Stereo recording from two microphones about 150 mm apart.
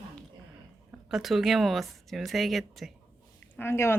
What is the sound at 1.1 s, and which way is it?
Speech, centre (ahead or behind).